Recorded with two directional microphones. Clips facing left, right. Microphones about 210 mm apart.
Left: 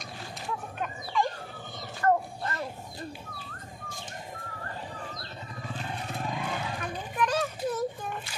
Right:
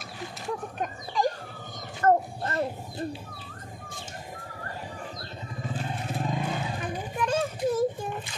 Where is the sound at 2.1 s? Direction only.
40° right (ahead or behind).